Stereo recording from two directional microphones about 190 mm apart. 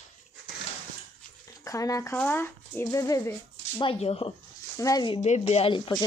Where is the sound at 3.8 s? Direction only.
30° left (ahead or behind).